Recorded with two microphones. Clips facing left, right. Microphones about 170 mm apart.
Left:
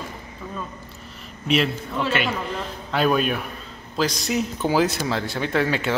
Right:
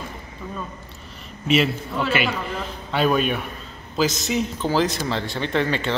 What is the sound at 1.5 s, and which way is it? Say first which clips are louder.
A man's voice: right 2 dB; 5° right (ahead or behind).